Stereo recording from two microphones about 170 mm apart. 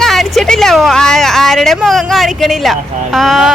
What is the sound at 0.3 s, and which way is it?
Speech, 5° left (ahead or behind).